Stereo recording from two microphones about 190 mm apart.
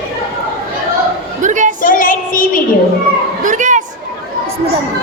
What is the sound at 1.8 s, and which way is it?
Child singing, 45° left (ahead or behind).